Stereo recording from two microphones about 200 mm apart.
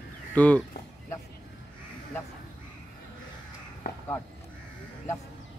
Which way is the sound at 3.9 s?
50° left (ahead or behind).